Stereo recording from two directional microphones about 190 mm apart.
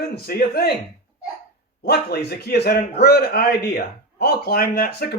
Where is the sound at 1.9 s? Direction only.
55° left (ahead or behind).